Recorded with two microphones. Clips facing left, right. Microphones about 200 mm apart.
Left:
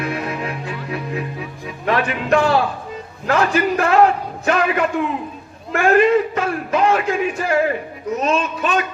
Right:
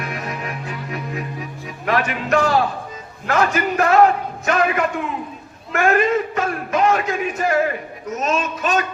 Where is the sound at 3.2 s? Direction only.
35° left (ahead or behind).